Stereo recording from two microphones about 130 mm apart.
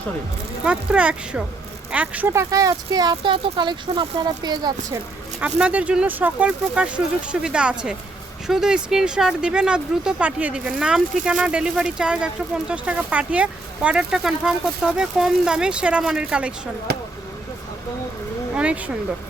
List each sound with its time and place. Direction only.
0.6 s a woman's voice: 10° right (ahead or behind); by 4.9 s 35° right (ahead or behind)
5.4 s speech: 10° right (ahead or behind)
18.5 s a sound: 10° right (ahead or behind)